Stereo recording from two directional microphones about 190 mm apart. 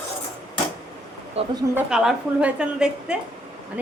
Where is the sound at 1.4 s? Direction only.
30° right (ahead or behind).